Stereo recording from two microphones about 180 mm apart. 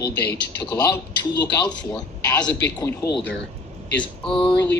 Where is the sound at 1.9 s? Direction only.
5° left (ahead or behind).